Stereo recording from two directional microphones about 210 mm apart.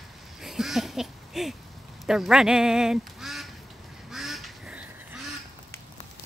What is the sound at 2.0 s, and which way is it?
Speech, centre (ahead or behind).